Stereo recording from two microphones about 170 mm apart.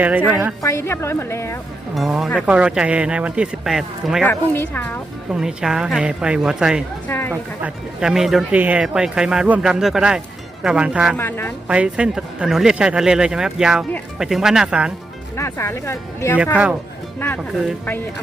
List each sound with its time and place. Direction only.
0.0 s a man's voice: 10° right (ahead or behind)
0.6 s speech: 15° left (ahead or behind)
2.0 s a man's voice: centre (ahead or behind)
4.3 s speech: 10° left (ahead or behind)
5.3 s speech: 5° right (ahead or behind)
7.1 s speech: 15° left (ahead or behind)
7.6 s speech: 5° right (ahead or behind)
11.2 s speech: 15° left (ahead or behind)
11.7 s speech: 5° right (ahead or behind)
15.4 s speech: 15° left (ahead or behind)